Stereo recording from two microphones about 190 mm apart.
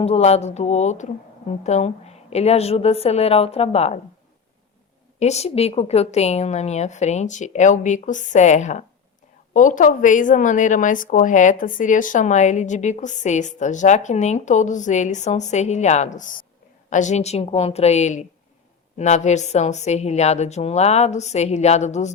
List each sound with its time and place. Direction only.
0.0 s a woman's voice: 35° left (ahead or behind)
5.2 s a woman's voice: 35° left (ahead or behind)